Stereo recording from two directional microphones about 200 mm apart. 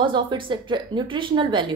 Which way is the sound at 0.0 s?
25° right (ahead or behind).